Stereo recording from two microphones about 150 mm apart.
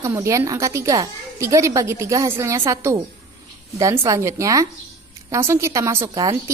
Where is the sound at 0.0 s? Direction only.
20° right (ahead or behind).